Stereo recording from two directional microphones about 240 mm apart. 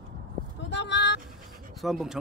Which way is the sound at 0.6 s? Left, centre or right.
Left.